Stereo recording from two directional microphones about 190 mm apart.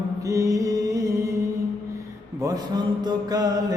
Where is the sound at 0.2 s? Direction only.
15° right (ahead or behind).